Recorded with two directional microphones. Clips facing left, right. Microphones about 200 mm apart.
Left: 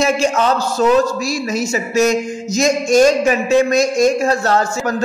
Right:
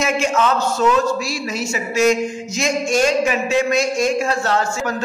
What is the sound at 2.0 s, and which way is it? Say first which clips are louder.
A man's voice: left 1 dB; 40° left (ahead or behind).